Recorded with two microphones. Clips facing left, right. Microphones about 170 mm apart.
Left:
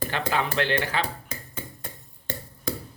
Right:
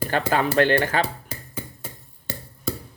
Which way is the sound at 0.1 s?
45° right (ahead or behind).